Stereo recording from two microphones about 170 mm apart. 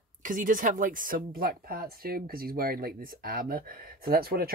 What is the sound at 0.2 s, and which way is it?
Speech, 55° right (ahead or behind).